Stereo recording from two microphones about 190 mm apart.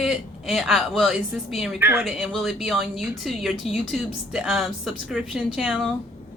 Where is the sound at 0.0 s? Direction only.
Centre (ahead or behind).